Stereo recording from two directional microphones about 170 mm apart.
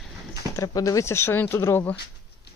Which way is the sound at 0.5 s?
20° left (ahead or behind).